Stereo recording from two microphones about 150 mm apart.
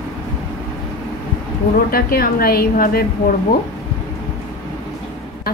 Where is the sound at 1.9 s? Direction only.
80° left.